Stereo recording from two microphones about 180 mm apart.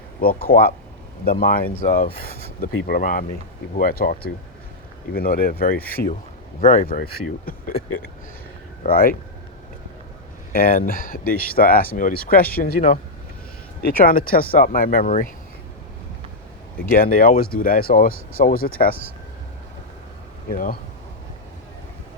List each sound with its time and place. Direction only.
0.2 s speech: 55° left (ahead or behind)
8.8 s speech: 55° left (ahead or behind)
10.5 s speech: 55° left (ahead or behind)
15.0 s speech: 40° left (ahead or behind)
16.9 s speech: 55° left (ahead or behind)
20.5 s speech: 55° left (ahead or behind)